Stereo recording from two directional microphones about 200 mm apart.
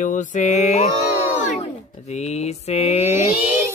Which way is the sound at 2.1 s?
35° left (ahead or behind).